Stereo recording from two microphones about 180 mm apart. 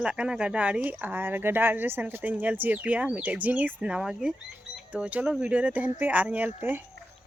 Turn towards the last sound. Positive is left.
turn(degrees=-10)  # may be behind; listen again after turning